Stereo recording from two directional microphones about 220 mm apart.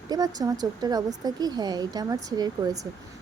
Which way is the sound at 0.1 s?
15° right (ahead or behind).